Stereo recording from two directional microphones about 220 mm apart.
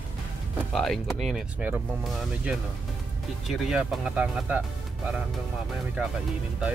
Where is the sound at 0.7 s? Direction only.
Centre (ahead or behind).